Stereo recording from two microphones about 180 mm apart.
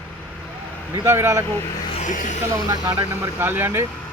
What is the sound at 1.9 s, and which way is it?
Music, 45° left (ahead or behind).